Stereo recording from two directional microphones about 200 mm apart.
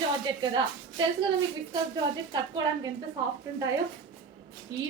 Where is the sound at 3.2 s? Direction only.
20° right (ahead or behind).